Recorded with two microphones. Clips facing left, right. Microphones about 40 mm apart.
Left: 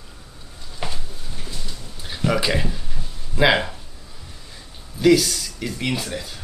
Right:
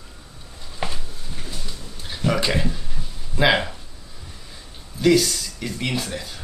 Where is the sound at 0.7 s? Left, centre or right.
Centre.